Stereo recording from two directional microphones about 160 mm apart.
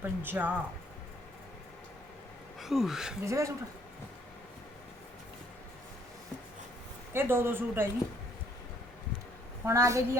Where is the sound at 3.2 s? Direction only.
20° right (ahead or behind).